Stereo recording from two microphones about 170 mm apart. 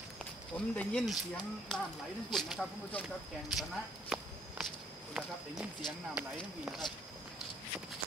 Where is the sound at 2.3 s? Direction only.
Centre (ahead or behind).